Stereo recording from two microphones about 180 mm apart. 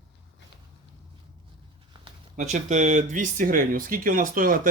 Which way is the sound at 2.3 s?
40° right (ahead or behind).